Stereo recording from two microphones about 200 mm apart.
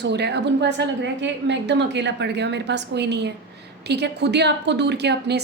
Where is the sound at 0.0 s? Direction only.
55° right (ahead or behind).